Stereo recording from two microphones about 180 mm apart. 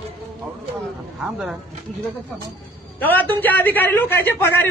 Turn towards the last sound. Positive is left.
turn(degrees=10)  # may be behind; listen again after turning